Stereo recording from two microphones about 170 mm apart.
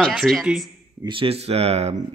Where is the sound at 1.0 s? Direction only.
30° right (ahead or behind).